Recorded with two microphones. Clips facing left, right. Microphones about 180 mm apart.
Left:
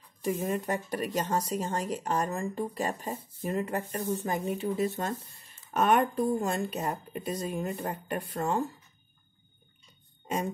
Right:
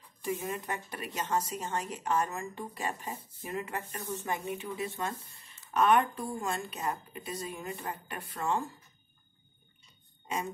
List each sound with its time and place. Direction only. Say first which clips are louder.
0.5 s speech: left 7 dB; 45° left (ahead or behind)